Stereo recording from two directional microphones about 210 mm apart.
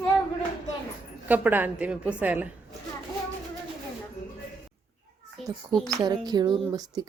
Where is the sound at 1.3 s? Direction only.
10° right (ahead or behind).